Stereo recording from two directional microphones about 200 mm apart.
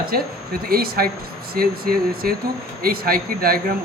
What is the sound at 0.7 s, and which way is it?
Speech, 45° right (ahead or behind).